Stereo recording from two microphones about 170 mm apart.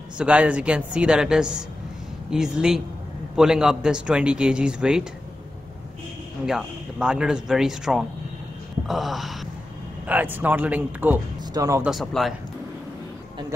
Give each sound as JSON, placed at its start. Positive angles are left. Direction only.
{"t": 0.2, "sound": "a man's voice", "side_deg": -5}
{"t": 6.4, "sound": "a man's voice", "side_deg": -5}
{"t": 11.8, "sound": "a man's voice", "side_deg": 0}